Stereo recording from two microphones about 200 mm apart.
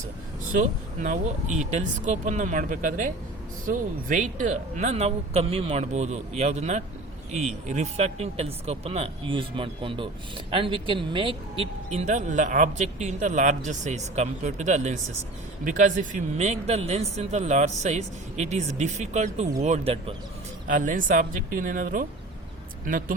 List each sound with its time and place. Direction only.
0.5 s speech: 35° right (ahead or behind)
20.7 s speech: 40° right (ahead or behind)